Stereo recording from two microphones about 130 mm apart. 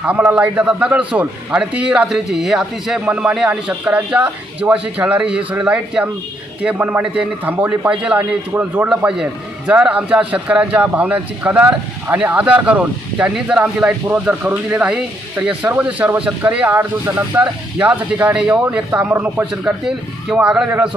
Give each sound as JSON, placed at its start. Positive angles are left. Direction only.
{"t": 0.0, "sound": "speech", "side_deg": -15}